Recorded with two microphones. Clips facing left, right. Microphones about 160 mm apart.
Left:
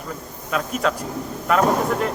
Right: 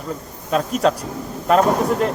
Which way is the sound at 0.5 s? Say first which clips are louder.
Right 5 dB; 35° right (ahead or behind).